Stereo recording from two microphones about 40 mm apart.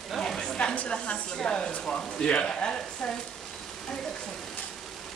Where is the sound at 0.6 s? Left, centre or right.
Left.